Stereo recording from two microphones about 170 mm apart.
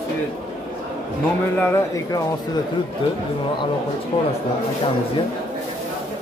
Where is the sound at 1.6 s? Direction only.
15° left (ahead or behind).